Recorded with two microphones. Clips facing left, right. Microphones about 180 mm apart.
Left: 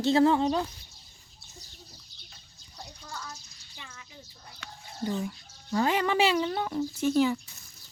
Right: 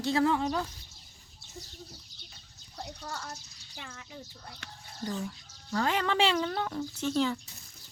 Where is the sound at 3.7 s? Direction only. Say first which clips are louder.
Right 4 dB; 55° right (ahead or behind).